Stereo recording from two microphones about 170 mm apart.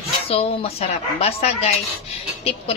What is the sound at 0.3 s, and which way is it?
Speech, 35° left (ahead or behind).